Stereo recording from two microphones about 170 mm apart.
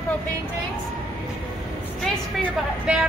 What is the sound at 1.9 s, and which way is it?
Speech, 5° left (ahead or behind).